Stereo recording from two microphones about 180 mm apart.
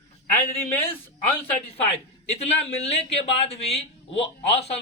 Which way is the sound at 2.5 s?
40° left (ahead or behind).